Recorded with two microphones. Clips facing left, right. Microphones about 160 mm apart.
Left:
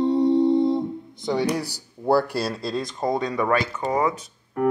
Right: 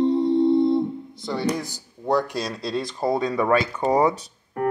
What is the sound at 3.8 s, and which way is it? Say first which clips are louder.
Speech: right 3 dB; 35° right (ahead or behind).